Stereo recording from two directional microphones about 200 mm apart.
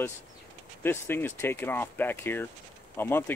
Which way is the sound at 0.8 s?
10° left (ahead or behind).